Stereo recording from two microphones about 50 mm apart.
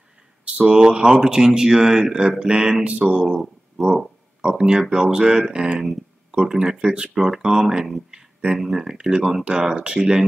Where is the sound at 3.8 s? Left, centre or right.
Centre.